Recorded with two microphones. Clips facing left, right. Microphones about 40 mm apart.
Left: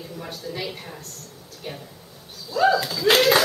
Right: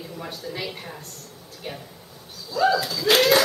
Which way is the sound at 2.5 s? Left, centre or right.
Centre.